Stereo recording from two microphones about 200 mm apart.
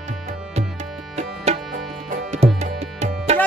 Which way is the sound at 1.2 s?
35° right (ahead or behind).